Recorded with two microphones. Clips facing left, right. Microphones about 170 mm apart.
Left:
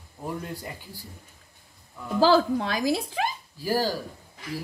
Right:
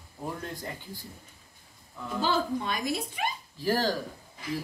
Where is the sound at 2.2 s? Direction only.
90° left.